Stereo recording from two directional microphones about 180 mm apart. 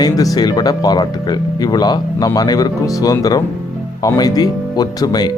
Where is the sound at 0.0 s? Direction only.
20° left (ahead or behind).